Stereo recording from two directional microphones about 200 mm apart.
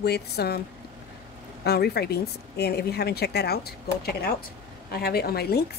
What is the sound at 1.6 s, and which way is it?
Speech, 55° left (ahead or behind).